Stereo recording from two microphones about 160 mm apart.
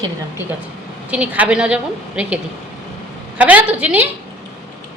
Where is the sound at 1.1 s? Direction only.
10° right (ahead or behind).